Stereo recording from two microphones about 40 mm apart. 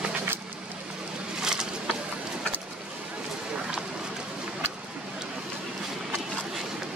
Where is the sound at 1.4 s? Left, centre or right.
Centre.